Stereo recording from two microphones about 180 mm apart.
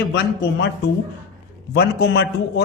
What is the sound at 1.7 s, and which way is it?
Speech, 60° left (ahead or behind).